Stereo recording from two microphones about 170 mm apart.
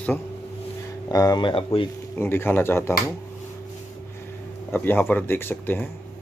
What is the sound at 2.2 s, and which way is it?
Speech, 15° left (ahead or behind).